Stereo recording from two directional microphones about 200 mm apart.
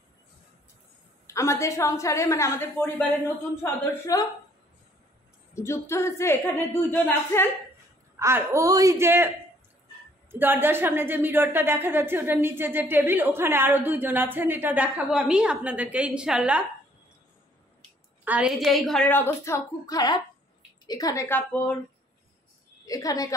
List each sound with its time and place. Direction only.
1.2 s a woman's voice: 15° left (ahead or behind)
5.5 s a woman's voice: 15° left (ahead or behind)
8.2 s a woman's voice: 15° right (ahead or behind)
10.4 s a woman's voice: 10° right (ahead or behind)
18.2 s a woman's voice: 5° right (ahead or behind); by 21.7 s 10° left (ahead or behind)
22.8 s a woman's voice: 15° left (ahead or behind)